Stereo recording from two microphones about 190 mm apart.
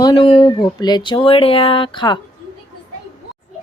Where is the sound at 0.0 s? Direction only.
25° left (ahead or behind).